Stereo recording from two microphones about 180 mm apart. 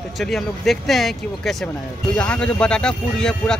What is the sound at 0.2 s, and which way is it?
Speech, centre (ahead or behind).